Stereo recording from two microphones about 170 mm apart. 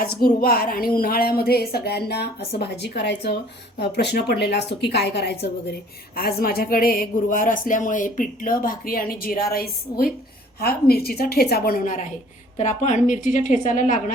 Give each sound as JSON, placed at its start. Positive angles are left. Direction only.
{"t": 0.0, "sound": "a woman's voice", "side_deg": 60}
{"t": 12.5, "sound": "a woman's voice", "side_deg": 45}